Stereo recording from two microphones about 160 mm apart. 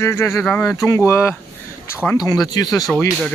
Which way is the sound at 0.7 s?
20° left (ahead or behind).